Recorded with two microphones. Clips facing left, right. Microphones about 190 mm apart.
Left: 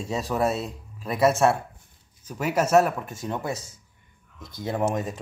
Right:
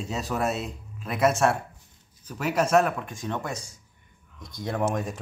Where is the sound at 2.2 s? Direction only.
5° left (ahead or behind).